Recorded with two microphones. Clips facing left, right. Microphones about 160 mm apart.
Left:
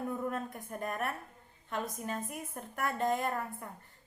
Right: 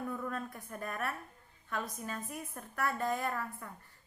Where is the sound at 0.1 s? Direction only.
25° left (ahead or behind).